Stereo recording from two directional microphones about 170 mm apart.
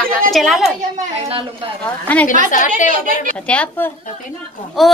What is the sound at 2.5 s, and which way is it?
Speech, 45° left (ahead or behind).